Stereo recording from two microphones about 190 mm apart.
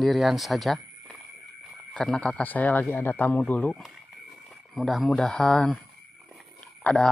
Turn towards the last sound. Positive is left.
turn(degrees=5)  # may be behind; listen again after turning